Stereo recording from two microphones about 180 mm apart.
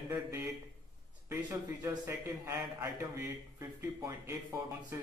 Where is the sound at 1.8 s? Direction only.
15° right (ahead or behind).